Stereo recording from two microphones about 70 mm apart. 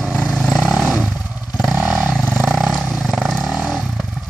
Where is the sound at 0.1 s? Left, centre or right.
Centre.